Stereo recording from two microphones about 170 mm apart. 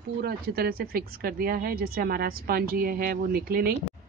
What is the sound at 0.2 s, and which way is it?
Speech, 65° right (ahead or behind).